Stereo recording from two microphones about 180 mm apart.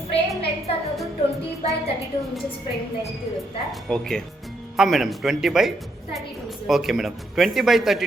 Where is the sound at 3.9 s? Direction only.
5° left (ahead or behind).